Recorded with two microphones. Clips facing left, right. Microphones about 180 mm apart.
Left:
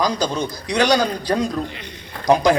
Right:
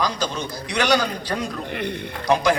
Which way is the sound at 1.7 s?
60° right (ahead or behind).